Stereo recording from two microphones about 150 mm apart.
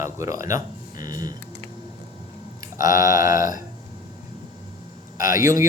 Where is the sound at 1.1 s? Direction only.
25° right (ahead or behind).